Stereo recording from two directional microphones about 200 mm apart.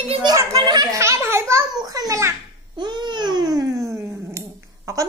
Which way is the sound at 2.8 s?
20° right (ahead or behind).